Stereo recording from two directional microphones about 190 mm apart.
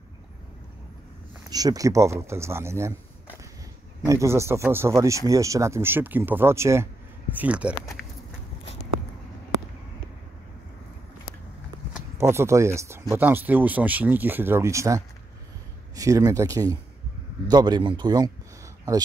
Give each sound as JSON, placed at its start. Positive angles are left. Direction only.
{"t": 1.5, "sound": "speech", "side_deg": -20}
{"t": 4.0, "sound": "speech", "side_deg": -15}
{"t": 11.9, "sound": "speech", "side_deg": -15}